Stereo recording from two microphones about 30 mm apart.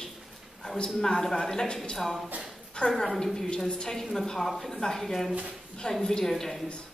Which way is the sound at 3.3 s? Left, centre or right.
Centre.